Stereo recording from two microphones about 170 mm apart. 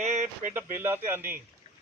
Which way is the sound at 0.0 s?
45° right (ahead or behind).